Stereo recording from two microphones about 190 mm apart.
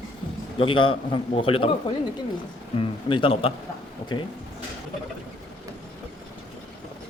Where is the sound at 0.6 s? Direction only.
25° left (ahead or behind).